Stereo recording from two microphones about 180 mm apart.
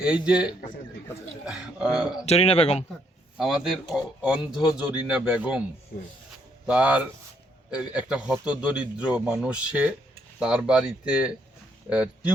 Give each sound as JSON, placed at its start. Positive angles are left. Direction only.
{"t": 0.0, "sound": "a man's voice", "side_deg": -5}
{"t": 2.2, "sound": "speech", "side_deg": 35}
{"t": 3.3, "sound": "a man's voice", "side_deg": 0}
{"t": 6.7, "sound": "a man's voice", "side_deg": -5}